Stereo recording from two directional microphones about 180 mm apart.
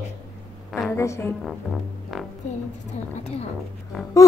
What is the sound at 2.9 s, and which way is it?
Speech, 35° left (ahead or behind).